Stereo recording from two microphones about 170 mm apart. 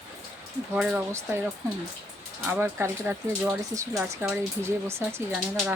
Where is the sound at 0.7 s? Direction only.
5° right (ahead or behind).